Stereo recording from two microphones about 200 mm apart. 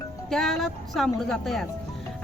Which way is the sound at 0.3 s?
Centre (ahead or behind).